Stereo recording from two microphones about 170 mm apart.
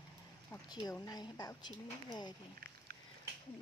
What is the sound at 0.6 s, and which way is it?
Speech, 20° left (ahead or behind).